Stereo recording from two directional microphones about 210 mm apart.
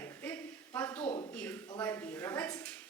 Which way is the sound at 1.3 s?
5° left (ahead or behind).